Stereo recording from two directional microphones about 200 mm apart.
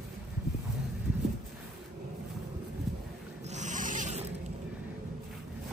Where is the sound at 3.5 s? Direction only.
40° right (ahead or behind).